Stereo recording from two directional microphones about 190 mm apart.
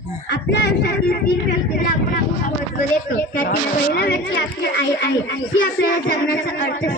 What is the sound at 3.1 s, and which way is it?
A child's voice, 55° left (ahead or behind).